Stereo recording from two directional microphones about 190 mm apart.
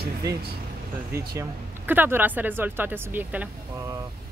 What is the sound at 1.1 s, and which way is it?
Speech, 15° right (ahead or behind).